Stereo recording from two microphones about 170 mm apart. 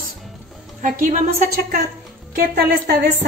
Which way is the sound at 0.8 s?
45° right (ahead or behind).